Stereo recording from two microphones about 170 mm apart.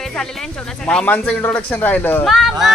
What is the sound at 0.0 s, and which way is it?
Speech, 5° left (ahead or behind).